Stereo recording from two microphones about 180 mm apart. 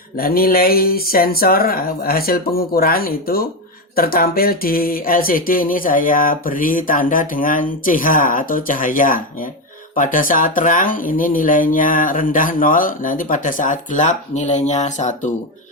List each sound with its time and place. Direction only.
0.2 s speech: 55° left (ahead or behind)